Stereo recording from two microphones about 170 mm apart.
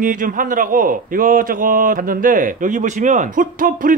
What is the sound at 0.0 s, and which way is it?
A man's voice, 50° right (ahead or behind).